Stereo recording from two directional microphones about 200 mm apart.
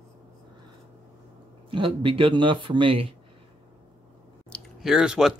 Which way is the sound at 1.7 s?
25° right (ahead or behind).